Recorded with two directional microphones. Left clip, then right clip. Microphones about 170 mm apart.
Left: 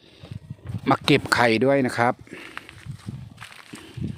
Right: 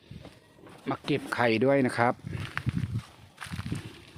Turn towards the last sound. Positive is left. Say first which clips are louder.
# even
turn(degrees=10)  # may be behind; listen again after turning